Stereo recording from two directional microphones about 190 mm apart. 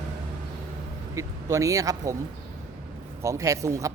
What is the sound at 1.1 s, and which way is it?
A man's voice, 15° right (ahead or behind).